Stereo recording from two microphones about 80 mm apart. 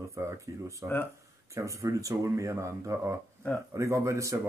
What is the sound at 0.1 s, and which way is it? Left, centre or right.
Speech, right.